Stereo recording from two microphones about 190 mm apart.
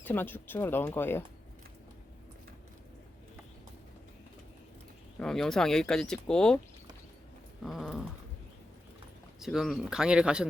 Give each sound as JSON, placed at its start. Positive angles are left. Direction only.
{"t": 0.0, "sound": "speech", "side_deg": 10}
{"t": 5.2, "sound": "speech", "side_deg": 5}
{"t": 7.6, "sound": "a sound", "side_deg": 0}
{"t": 9.4, "sound": "speech", "side_deg": 0}